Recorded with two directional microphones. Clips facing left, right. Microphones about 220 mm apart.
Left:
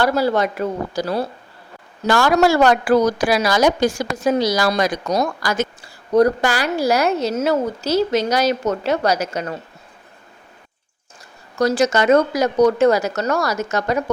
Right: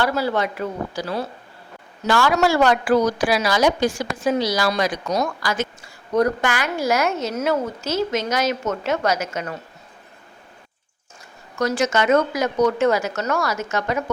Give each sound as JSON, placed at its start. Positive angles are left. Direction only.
{"t": 0.0, "sound": "a woman's voice", "side_deg": 40}
{"t": 11.5, "sound": "a woman's voice", "side_deg": 35}